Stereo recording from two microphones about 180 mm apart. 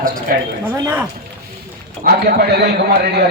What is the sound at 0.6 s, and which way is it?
Speech, 10° right (ahead or behind).